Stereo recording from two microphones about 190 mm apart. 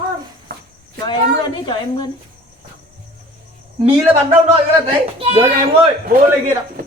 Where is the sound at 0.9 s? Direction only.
25° left (ahead or behind).